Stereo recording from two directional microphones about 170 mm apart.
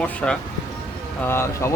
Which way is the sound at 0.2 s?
5° left (ahead or behind).